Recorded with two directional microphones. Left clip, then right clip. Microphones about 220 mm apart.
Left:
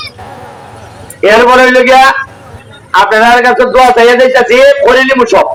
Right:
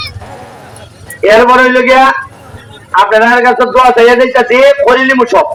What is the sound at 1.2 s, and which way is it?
Speech, 45° left (ahead or behind).